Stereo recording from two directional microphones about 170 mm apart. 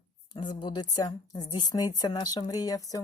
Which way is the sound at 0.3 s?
25° left (ahead or behind).